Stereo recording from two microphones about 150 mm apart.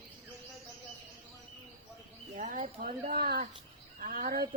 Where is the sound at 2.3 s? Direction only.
60° right (ahead or behind); by 3.4 s 85° right.